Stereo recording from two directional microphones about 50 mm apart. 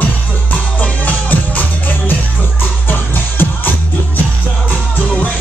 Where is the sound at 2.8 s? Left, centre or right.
Left.